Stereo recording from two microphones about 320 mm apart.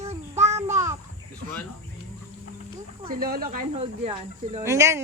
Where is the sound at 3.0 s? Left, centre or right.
Right.